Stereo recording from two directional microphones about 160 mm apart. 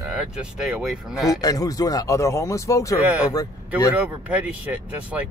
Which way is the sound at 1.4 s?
20° left (ahead or behind).